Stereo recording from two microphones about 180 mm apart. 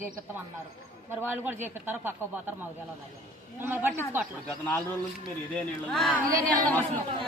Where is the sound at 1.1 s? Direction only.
10° right (ahead or behind).